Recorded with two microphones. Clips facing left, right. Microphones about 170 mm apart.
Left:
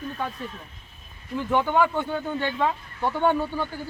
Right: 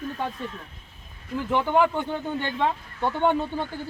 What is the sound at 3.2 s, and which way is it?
Speech, 25° right (ahead or behind).